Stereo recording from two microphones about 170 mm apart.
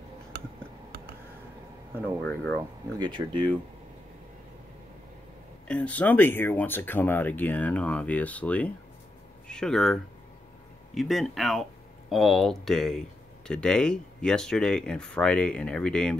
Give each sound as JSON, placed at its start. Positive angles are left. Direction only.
{"t": 2.0, "sound": "speech", "side_deg": 10}
{"t": 3.1, "sound": "speech", "side_deg": -30}
{"t": 5.7, "sound": "speech", "side_deg": 10}
{"t": 11.0, "sound": "speech", "side_deg": 0}